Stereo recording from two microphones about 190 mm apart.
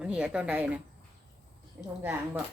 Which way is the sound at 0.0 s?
5° right (ahead or behind).